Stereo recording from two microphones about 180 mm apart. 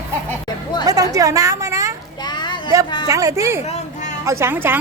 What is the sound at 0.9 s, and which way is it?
A woman's voice, 20° right (ahead or behind).